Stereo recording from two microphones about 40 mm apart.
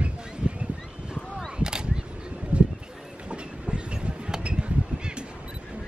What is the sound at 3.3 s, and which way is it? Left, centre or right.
Train, right.